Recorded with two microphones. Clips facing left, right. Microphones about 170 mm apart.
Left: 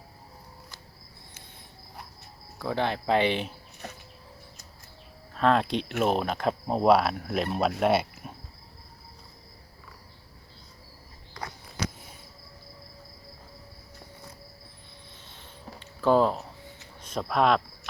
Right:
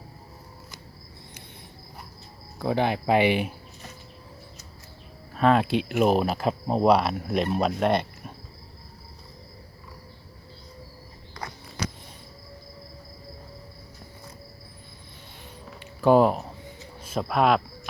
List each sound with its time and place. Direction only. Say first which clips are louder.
2.6 s speech: right 4 dB; 15° right (ahead or behind)
5.3 s speech: right 3 dB; 5° right (ahead or behind)
15.8 s a sound: right 4 dB; 15° right (ahead or behind)
17.0 s a man's voice: right 2 dB; 5° right (ahead or behind)